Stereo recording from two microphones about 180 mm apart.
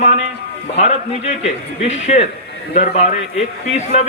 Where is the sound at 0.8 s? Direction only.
40° left (ahead or behind).